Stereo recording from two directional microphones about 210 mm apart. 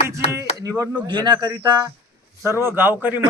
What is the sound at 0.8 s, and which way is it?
Speech, 20° right (ahead or behind).